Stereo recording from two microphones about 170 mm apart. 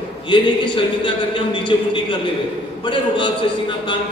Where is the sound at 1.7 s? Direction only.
30° left (ahead or behind).